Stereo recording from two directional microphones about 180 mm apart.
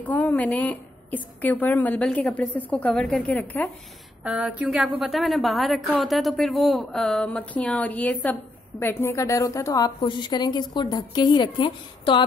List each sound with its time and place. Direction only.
0.0 s a woman's voice: 10° left (ahead or behind)
4.2 s a woman's voice: 5° right (ahead or behind); by 12.3 s 25° left (ahead or behind)